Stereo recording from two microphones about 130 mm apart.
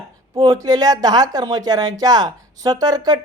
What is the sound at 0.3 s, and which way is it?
Speech, 30° right (ahead or behind).